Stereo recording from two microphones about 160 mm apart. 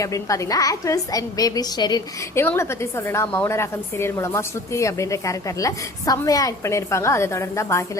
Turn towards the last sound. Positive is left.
turn(degrees=20)  # may be behind; listen again after turning